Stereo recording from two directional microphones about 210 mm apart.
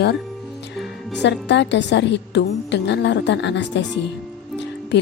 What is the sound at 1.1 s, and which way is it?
A woman's voice, 55° left (ahead or behind).